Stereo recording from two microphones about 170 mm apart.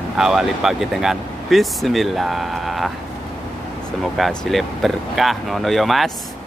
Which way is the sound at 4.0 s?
Centre (ahead or behind).